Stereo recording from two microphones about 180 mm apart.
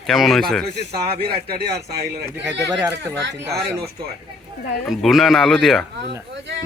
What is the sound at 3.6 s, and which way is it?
Speech, 65° right (ahead or behind).